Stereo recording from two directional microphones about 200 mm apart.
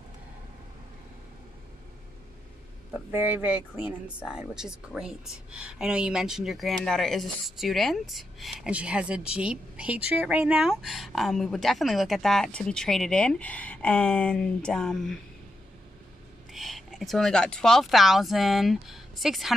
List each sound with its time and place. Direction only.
3.1 s speech: 10° right (ahead or behind)
16.5 s speech: centre (ahead or behind)